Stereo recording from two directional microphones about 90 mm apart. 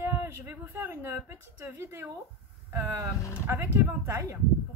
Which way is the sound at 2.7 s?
25° right (ahead or behind).